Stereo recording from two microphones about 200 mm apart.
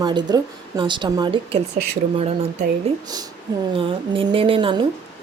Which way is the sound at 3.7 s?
25° right (ahead or behind).